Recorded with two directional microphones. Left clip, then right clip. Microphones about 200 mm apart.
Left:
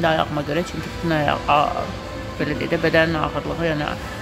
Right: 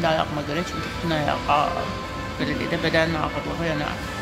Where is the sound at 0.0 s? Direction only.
20° left (ahead or behind).